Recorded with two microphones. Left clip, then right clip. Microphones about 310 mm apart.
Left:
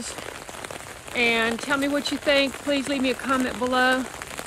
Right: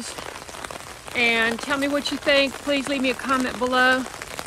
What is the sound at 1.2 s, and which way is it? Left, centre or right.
Speech, right.